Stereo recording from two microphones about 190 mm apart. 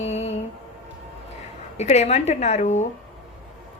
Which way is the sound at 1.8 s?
35° left (ahead or behind).